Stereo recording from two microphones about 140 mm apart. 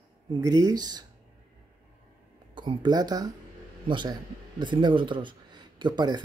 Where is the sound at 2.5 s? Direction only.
35° right (ahead or behind).